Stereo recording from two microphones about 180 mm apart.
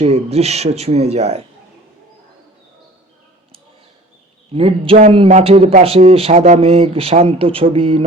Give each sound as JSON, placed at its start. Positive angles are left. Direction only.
{"t": 0.0, "sound": "speech", "side_deg": -35}
{"t": 4.5, "sound": "speech", "side_deg": -30}